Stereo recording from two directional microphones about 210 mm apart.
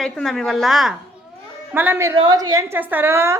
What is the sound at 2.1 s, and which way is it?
A woman's voice, 20° right (ahead or behind).